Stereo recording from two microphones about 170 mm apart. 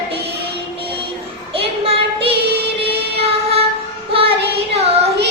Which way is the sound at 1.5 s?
35° right (ahead or behind).